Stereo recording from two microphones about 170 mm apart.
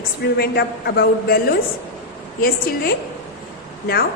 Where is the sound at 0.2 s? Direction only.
70° left (ahead or behind).